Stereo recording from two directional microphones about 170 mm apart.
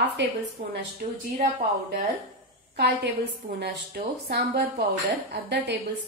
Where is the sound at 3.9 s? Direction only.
65° right (ahead or behind).